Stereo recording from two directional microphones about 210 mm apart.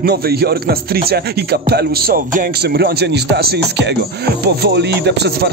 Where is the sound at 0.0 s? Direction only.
50° right (ahead or behind).